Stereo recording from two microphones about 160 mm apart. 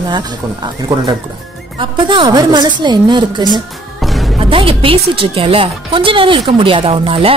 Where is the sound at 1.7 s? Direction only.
30° right (ahead or behind).